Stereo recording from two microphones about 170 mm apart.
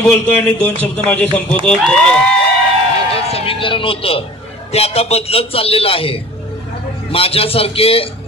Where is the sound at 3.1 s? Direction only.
35° left (ahead or behind).